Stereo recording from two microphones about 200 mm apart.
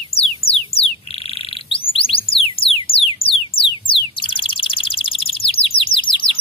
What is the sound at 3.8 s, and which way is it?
Bird, 25° left (ahead or behind).